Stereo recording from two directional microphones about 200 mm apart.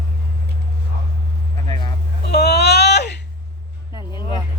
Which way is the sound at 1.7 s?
20° left (ahead or behind).